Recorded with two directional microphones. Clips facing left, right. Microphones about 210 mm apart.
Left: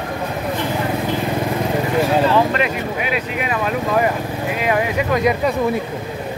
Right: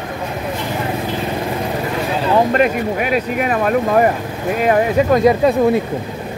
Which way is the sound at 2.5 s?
45° right (ahead or behind).